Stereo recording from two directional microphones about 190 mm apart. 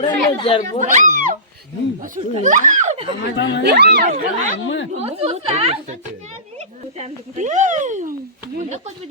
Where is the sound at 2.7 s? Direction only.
40° right (ahead or behind).